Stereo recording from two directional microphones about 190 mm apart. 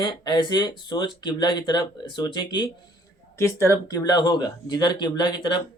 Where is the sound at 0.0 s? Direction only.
25° left (ahead or behind).